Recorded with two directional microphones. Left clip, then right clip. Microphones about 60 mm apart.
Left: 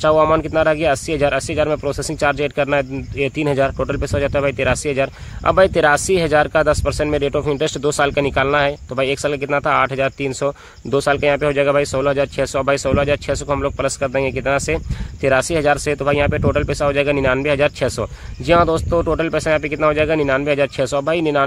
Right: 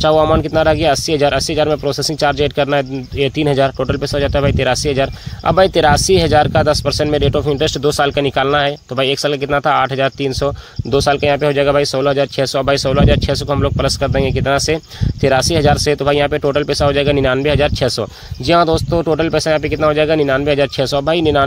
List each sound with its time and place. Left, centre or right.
0.0 s speech: right